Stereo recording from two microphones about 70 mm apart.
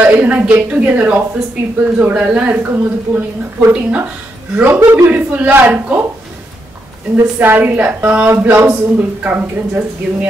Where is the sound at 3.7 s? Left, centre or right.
Right.